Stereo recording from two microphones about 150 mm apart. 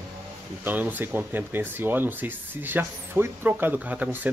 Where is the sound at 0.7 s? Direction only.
10° right (ahead or behind).